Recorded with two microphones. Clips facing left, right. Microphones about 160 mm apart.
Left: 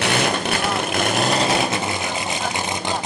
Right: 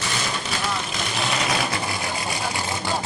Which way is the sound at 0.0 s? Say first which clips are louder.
Left 8 dB; 65° left (ahead or behind).